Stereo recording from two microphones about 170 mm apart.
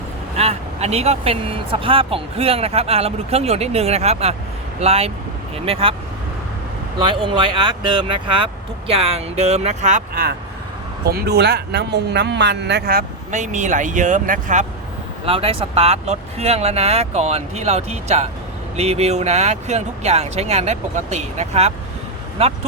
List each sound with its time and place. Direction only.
0.3 s speech: 40° right (ahead or behind)
7.0 s speech: 30° right (ahead or behind); by 10.2 s 45° right (ahead or behind)
11.0 s speech: 70° right (ahead or behind); by 14.7 s 45° right (ahead or behind)
15.3 s speech: 35° right (ahead or behind)